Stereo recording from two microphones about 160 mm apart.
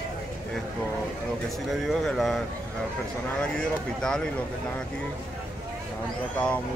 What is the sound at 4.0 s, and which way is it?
Speech, 5° left (ahead or behind).